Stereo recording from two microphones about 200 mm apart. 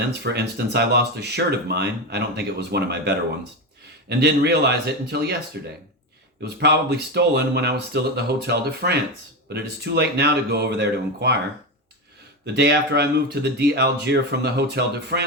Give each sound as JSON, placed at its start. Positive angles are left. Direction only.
{"t": 0.2, "sound": "speech", "side_deg": -55}
{"t": 4.1, "sound": "speech", "side_deg": -55}
{"t": 6.4, "sound": "speech", "side_deg": -55}
{"t": 12.5, "sound": "speech", "side_deg": -55}